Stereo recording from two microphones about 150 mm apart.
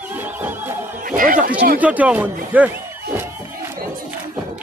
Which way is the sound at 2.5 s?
10° right (ahead or behind).